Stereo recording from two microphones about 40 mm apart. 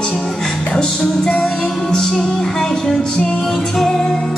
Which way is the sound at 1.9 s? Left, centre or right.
Centre.